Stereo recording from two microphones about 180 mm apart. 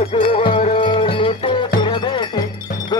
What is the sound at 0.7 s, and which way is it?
Music, 25° left (ahead or behind).